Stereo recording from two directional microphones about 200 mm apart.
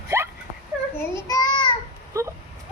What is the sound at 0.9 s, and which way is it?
Child singing, 15° left (ahead or behind).